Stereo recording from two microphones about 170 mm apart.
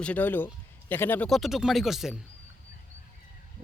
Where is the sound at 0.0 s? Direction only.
10° left (ahead or behind).